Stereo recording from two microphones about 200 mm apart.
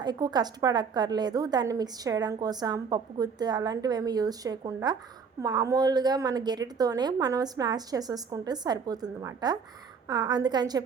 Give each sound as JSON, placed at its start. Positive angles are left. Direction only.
{"t": 0.0, "sound": "a woman's voice", "side_deg": -20}